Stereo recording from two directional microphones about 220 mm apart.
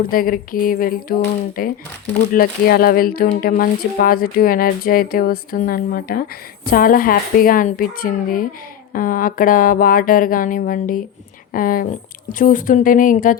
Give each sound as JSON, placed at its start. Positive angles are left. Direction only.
{"t": 0.0, "sound": "speech", "side_deg": 40}